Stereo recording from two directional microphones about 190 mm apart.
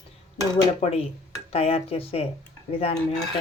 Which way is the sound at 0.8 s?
35° left (ahead or behind).